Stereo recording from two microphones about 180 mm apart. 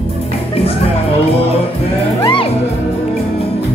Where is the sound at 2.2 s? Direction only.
30° left (ahead or behind).